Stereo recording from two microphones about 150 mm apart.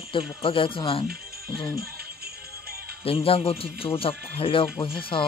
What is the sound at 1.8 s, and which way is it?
Music, 90° right.